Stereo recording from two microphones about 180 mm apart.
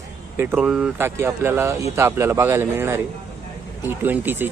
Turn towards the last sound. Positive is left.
turn(degrees=-10)  # may be behind; listen again after turning